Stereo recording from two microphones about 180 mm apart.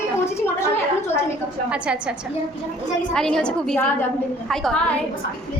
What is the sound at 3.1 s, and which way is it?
A woman's voice, 5° left (ahead or behind).